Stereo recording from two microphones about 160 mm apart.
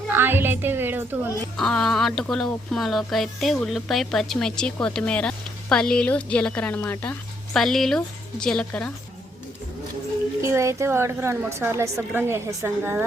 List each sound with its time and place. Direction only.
0.1 s a woman's voice: 15° right (ahead or behind)
1.5 s speech: 5° left (ahead or behind)
7.5 s speech: centre (ahead or behind)
10.4 s a woman's voice: 20° right (ahead or behind)